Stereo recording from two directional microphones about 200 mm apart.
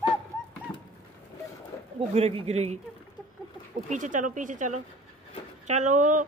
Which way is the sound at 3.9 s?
40° right (ahead or behind).